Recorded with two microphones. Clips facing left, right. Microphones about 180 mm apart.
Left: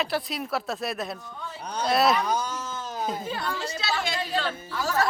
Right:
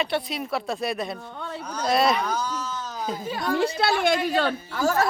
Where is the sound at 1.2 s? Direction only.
65° right (ahead or behind).